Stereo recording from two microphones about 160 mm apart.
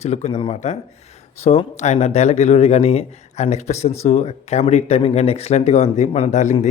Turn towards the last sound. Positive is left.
turn(degrees=45)  # may be behind; listen again after turning